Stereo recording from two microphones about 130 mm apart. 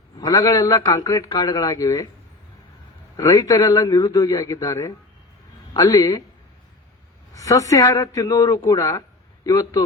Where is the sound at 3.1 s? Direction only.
25° left (ahead or behind).